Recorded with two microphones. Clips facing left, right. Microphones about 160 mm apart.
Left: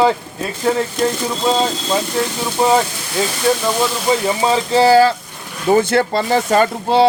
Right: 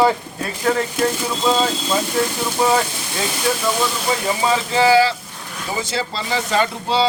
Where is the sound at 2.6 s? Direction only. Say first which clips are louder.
Left 3 dB; 30° left (ahead or behind).